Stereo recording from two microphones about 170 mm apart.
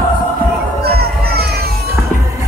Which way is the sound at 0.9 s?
65° right (ahead or behind).